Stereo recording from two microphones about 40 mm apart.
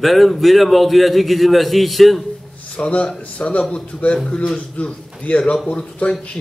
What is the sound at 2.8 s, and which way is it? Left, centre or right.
A man's voice, left.